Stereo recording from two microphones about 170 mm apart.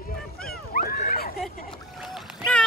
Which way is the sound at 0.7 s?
60° left (ahead or behind).